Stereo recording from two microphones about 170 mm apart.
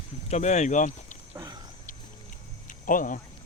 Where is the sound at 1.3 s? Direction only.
20° right (ahead or behind).